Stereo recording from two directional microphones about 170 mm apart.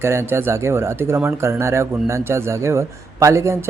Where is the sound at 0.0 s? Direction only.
15° right (ahead or behind).